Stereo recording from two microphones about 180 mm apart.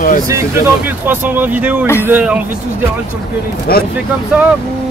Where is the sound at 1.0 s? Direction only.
10° right (ahead or behind).